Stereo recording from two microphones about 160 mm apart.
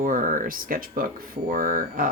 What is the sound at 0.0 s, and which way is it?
Speech, 55° right (ahead or behind).